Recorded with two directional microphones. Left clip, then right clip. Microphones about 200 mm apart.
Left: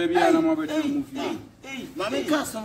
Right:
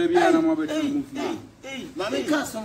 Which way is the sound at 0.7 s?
15° right (ahead or behind).